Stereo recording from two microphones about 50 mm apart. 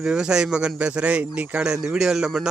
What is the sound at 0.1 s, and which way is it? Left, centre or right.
Speech, centre.